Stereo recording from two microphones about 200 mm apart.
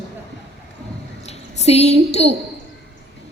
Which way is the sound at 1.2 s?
30° left (ahead or behind).